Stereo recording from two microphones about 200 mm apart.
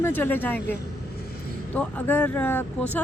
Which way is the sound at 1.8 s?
10° left (ahead or behind).